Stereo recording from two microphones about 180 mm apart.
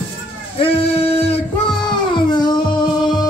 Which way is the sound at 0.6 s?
35° left (ahead or behind).